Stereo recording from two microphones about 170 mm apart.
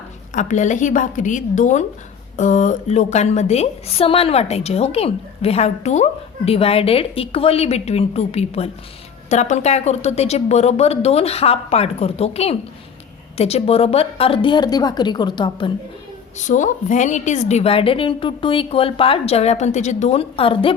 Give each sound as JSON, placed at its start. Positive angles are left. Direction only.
{"t": 0.3, "sound": "a woman's voice", "side_deg": 45}
{"t": 16.5, "sound": "a woman's voice", "side_deg": 45}